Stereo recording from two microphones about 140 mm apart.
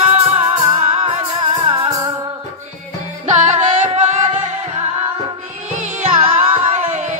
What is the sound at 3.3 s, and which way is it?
Music, 55° right (ahead or behind).